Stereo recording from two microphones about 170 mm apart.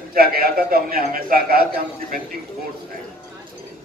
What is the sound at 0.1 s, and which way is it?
A man's voice, 60° right (ahead or behind).